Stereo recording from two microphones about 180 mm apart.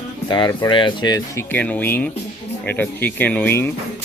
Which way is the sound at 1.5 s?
10° left (ahead or behind).